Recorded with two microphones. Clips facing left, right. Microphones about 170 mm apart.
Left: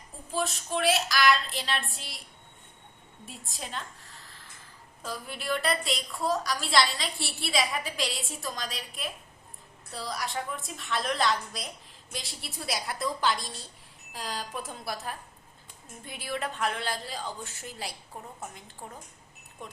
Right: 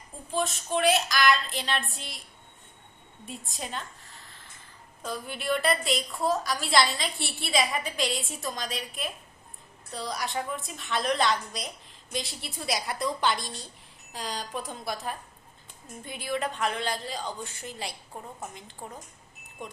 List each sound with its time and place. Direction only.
0.3 s a woman's voice: centre (ahead or behind)
3.2 s a woman's voice: centre (ahead or behind)